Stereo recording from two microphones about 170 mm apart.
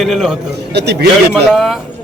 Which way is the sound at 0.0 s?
Centre (ahead or behind).